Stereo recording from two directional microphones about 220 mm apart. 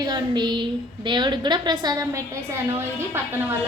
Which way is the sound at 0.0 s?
20° right (ahead or behind).